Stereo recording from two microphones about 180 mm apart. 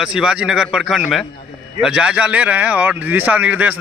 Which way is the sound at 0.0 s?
5° right (ahead or behind).